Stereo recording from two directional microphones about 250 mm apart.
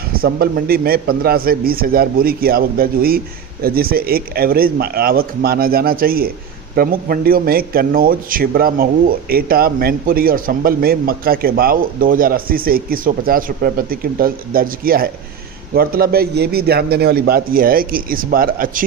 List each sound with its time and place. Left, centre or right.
0.1 s speech: right